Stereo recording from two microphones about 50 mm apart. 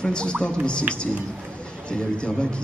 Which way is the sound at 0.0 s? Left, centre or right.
Centre.